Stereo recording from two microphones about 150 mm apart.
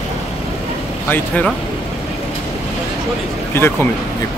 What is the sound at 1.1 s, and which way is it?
Speech, 10° left (ahead or behind).